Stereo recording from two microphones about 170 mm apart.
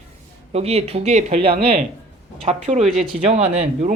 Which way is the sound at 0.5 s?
40° right (ahead or behind).